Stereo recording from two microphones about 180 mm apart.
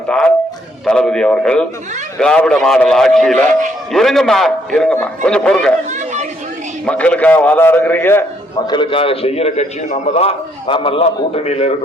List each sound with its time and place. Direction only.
0.1 s a man's voice: 5° left (ahead or behind)
5.9 s chatter: 40° right (ahead or behind)
6.8 s a man's voice: 5° left (ahead or behind)
8.6 s a man's voice: 25° left (ahead or behind)